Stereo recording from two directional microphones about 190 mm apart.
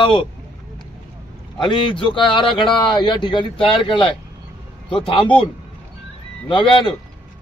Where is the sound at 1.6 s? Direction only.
25° left (ahead or behind).